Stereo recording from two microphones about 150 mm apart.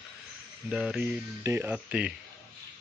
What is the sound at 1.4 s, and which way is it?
Speech, 15° right (ahead or behind).